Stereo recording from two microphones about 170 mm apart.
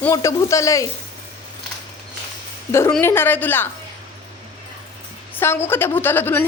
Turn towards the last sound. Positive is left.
turn(degrees=10)  # may be behind; listen again after turning